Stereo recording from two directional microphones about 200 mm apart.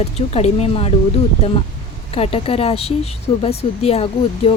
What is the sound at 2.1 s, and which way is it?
Speech, 30° left (ahead or behind).